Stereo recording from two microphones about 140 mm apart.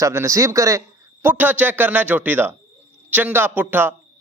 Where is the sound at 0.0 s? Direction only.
20° right (ahead or behind).